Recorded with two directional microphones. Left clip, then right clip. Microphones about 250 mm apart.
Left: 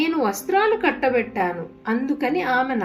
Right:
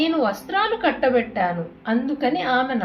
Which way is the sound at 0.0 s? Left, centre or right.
Left.